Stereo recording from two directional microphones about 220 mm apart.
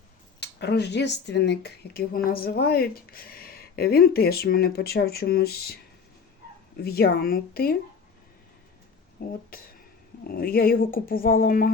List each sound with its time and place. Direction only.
0.3 s speech: 50° left (ahead or behind)
6.8 s speech: 45° left (ahead or behind)
9.2 s speech: 40° left (ahead or behind)